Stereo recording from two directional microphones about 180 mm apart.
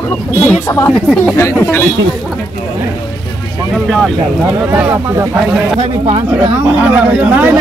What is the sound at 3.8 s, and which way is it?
Speech, centre (ahead or behind).